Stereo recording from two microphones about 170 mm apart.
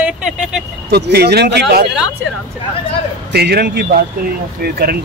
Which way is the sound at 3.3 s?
70° right (ahead or behind).